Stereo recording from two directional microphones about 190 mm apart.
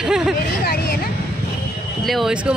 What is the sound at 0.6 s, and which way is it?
Vehicle, 55° left (ahead or behind).